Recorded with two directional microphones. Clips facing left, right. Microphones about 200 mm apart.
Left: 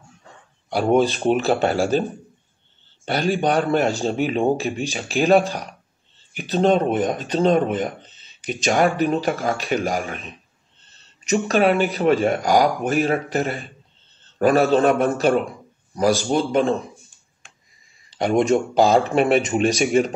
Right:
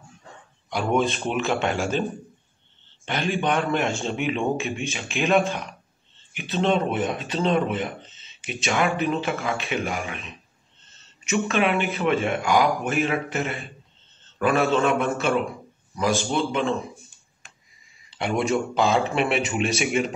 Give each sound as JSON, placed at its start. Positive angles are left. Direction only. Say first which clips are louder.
{"t": 0.7, "sound": "speech", "louder": "left 5 dB", "side_deg": 35}
{"t": 3.1, "sound": "speech", "louder": "left 4 dB", "side_deg": 35}
{"t": 18.1, "sound": "a sound", "louder": "left 6 dB", "side_deg": 40}
{"t": 18.5, "sound": "speech", "louder": "left 4 dB", "side_deg": 40}